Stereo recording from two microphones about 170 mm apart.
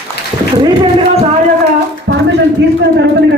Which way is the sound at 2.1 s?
90° right.